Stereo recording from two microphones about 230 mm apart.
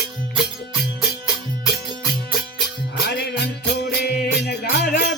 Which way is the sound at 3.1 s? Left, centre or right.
Left.